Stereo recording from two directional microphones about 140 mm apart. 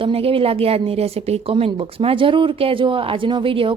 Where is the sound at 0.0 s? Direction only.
40° right (ahead or behind).